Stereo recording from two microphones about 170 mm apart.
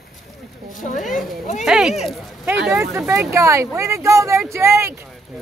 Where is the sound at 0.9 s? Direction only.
50° left (ahead or behind).